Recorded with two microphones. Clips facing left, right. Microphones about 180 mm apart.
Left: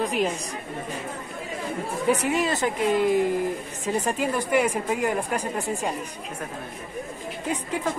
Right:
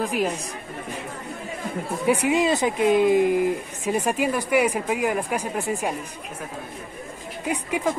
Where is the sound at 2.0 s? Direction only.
15° right (ahead or behind).